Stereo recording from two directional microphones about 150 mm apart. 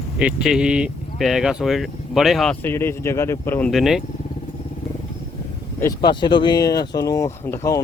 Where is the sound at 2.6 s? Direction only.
15° left (ahead or behind).